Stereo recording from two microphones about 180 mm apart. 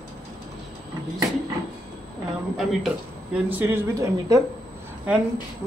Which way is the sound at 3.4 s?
10° right (ahead or behind).